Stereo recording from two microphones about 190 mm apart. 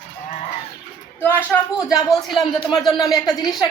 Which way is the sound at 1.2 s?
10° left (ahead or behind).